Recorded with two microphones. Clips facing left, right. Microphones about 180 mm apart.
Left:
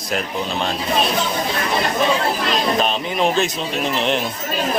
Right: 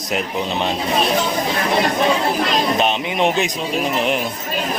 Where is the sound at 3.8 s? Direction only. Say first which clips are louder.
Even; 5° right (ahead or behind).